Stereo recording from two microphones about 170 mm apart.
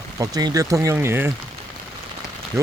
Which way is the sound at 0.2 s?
20° right (ahead or behind).